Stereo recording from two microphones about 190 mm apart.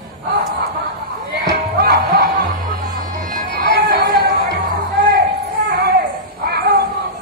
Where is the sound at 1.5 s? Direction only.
55° right (ahead or behind).